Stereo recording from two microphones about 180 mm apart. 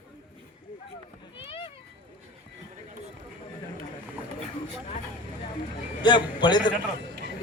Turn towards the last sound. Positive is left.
turn(degrees=25)  # may be behind; listen again after turning